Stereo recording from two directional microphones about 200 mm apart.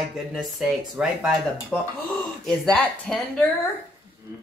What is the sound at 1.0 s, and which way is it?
Speech, 5° right (ahead or behind).